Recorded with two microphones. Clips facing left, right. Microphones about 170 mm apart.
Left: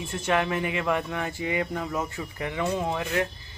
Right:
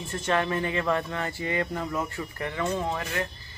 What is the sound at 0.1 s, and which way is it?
Speech, 10° left (ahead or behind).